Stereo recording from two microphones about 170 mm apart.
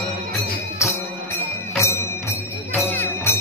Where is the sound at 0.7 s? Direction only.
15° left (ahead or behind).